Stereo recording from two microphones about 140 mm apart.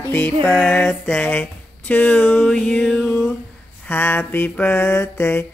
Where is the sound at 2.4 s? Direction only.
5° left (ahead or behind).